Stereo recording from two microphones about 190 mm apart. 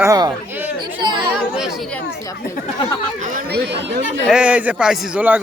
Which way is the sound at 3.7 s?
65° right (ahead or behind).